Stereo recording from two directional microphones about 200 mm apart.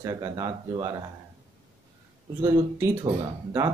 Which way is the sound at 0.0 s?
20° right (ahead or behind).